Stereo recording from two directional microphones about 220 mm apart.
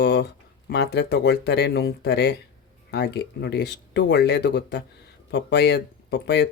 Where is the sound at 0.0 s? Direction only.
50° left (ahead or behind).